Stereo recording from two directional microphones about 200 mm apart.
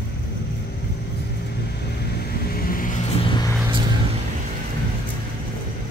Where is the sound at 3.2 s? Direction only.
25° left (ahead or behind).